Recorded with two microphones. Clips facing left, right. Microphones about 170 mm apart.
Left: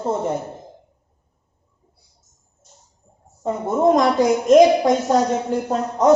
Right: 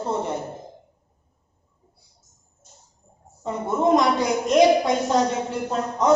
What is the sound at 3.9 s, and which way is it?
Speech, 45° left (ahead or behind).